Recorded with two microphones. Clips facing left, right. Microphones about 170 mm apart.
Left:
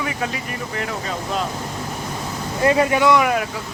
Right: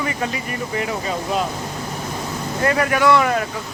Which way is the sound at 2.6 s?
20° left (ahead or behind).